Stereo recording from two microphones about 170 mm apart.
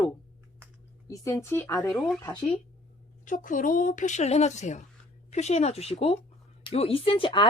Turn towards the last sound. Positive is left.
turn(degrees=30)  # may be behind; listen again after turning